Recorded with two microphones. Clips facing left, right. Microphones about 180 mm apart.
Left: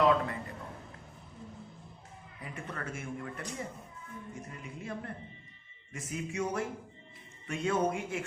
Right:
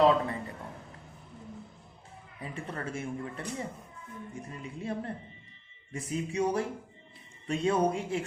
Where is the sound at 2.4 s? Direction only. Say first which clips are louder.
Right 3 dB; 30° right (ahead or behind).